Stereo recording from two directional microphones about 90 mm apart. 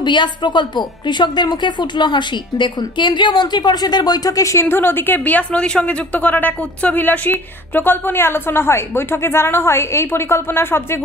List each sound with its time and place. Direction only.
0.0 s speech: 55° left (ahead or behind); by 11.0 s 25° left (ahead or behind)